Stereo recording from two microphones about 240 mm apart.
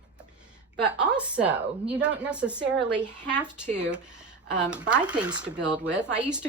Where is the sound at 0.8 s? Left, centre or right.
Centre.